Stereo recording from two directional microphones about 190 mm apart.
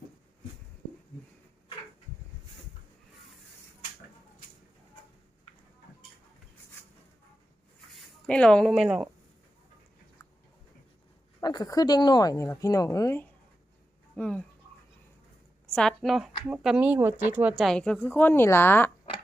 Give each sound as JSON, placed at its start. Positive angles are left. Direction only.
{"t": 8.3, "sound": "a woman's voice", "side_deg": 5}
{"t": 11.3, "sound": "speech", "side_deg": 20}
{"t": 15.7, "sound": "a woman's voice", "side_deg": 5}